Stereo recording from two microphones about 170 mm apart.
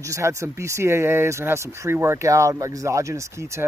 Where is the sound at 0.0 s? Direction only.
20° right (ahead or behind).